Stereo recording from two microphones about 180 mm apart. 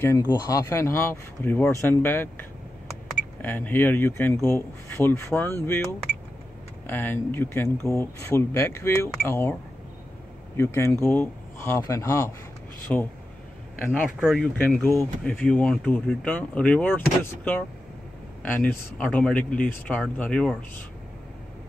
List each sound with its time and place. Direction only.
0.0 s speech: 20° left (ahead or behind)
3.4 s speech: 10° left (ahead or behind)
10.6 s speech: 15° left (ahead or behind)
14.6 s speech: 10° left (ahead or behind)